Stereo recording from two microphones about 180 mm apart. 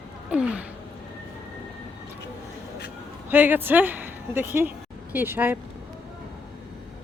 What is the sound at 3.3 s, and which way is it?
Speech, 10° right (ahead or behind).